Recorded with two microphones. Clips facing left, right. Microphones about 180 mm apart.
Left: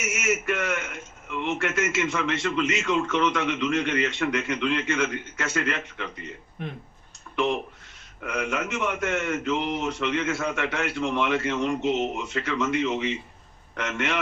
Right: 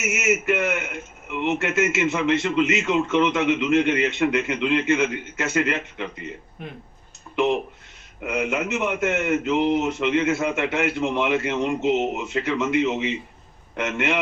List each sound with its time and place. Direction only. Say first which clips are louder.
0.0 s a man's voice: right 4 dB; 20° right (ahead or behind)
7.3 s a man's voice: right 4 dB; 20° right (ahead or behind)